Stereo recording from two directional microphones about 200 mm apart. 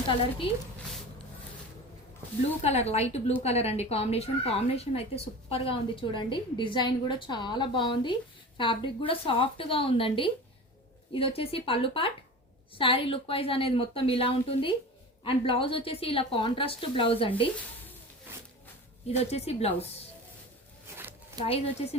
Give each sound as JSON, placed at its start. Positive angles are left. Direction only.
{"t": 0.4, "sound": "speech", "side_deg": 25}
{"t": 2.6, "sound": "a woman's voice", "side_deg": 30}
{"t": 18.3, "sound": "a sound", "side_deg": -10}
{"t": 19.0, "sound": "a woman's voice", "side_deg": 30}
{"t": 20.9, "sound": "a sound", "side_deg": -10}
{"t": 21.4, "sound": "speech", "side_deg": 30}